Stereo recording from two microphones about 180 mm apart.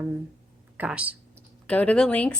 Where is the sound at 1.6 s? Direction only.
5° left (ahead or behind).